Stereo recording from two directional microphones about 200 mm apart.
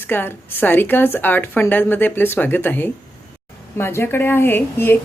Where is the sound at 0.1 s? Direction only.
10° left (ahead or behind).